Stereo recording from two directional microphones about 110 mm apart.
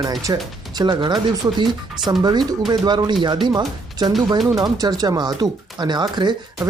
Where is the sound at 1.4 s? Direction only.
30° right (ahead or behind).